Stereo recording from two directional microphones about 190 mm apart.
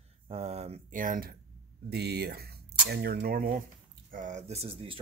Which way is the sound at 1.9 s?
60° right (ahead or behind).